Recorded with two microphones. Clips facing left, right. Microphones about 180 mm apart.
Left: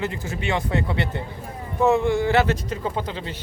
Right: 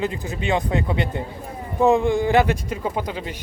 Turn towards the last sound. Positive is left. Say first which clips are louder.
# right 2 dB
turn(degrees=-15)  # may be behind; listen again after turning